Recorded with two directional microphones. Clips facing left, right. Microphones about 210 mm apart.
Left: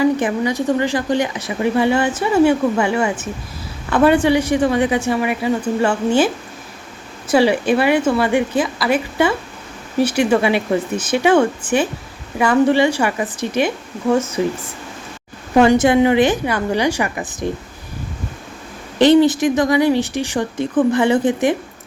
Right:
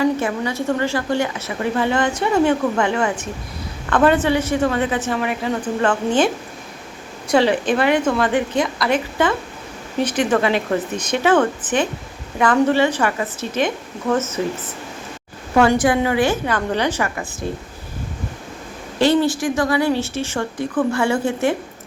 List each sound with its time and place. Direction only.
0.0 s a woman's voice: 15° left (ahead or behind)
18.9 s a woman's voice: 20° left (ahead or behind)